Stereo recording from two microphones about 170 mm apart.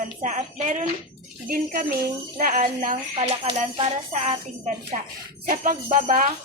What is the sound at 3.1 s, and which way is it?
Speech, 35° right (ahead or behind).